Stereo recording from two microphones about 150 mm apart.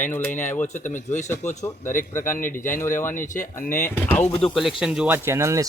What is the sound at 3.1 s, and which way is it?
Speech, 60° left (ahead or behind).